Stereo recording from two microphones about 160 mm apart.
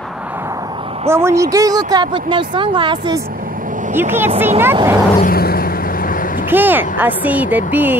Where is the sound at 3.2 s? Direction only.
65° right (ahead or behind).